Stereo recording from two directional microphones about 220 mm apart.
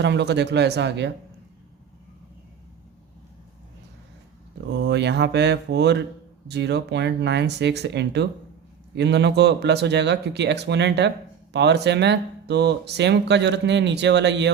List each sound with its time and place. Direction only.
0.0 s speech: 50° right (ahead or behind)
4.8 s speech: 50° right (ahead or behind)